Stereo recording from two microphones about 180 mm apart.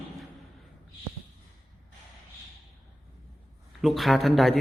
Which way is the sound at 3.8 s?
Centre (ahead or behind).